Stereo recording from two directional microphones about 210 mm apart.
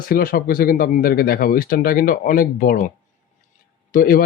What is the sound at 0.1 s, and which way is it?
Speech, 45° left (ahead or behind).